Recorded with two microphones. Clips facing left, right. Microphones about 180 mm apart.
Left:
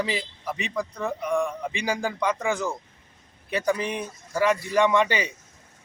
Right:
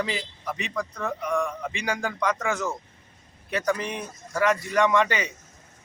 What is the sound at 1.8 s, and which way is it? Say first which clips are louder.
Speech: left 2 dB; 30° left (ahead or behind).